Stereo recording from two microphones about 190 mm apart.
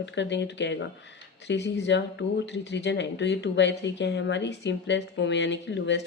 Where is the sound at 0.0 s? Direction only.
70° left (ahead or behind).